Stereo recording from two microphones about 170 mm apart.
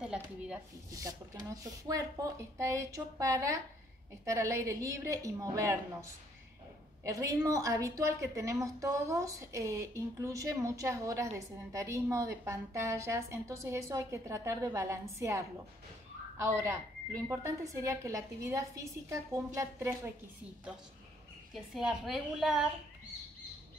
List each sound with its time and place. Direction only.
0.0 s a woman's voice: 5° right (ahead or behind)
0.9 s a woman's voice: 20° right (ahead or behind)
7.1 s a woman's voice: 20° right (ahead or behind)
21.7 s a woman's voice: centre (ahead or behind)